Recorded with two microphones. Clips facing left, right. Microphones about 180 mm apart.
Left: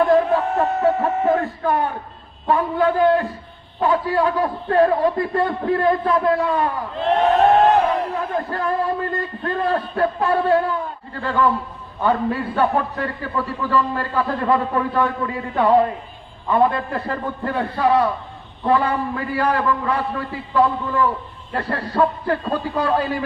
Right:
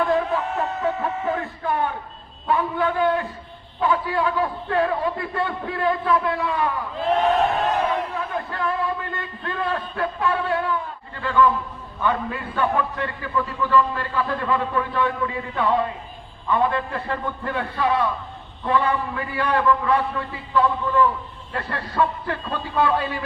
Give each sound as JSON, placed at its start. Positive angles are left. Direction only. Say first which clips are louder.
{"t": 0.3, "sound": "a sound", "louder": "left 5 dB", "side_deg": 40}
{"t": 2.5, "sound": "a man's voice", "louder": "left 4 dB", "side_deg": 40}
{"t": 6.9, "sound": "speech", "louder": "left 3 dB", "side_deg": 0}
{"t": 8.1, "sound": "a man's voice", "louder": "left 4 dB", "side_deg": 40}